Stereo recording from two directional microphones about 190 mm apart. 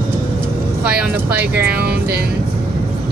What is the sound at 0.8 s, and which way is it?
Speech, 5° right (ahead or behind).